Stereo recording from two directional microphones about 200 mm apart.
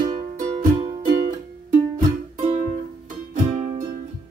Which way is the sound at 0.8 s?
25° right (ahead or behind).